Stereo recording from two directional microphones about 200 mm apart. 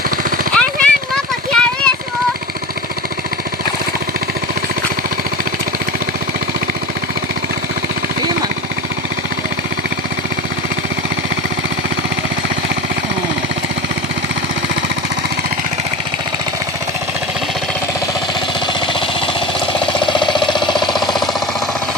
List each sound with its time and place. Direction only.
0.5 s a sound: 5° left (ahead or behind)
20.1 s engine: 25° left (ahead or behind)
20.9 s jackhammer: centre (ahead or behind)